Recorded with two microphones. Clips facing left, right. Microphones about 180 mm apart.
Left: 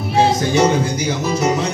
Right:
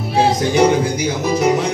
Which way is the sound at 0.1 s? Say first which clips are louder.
Even; 15° right (ahead or behind).